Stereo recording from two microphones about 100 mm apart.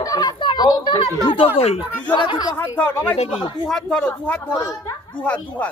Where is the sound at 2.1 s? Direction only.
55° left (ahead or behind).